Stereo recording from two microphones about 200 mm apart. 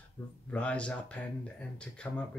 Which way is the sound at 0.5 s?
5° left (ahead or behind).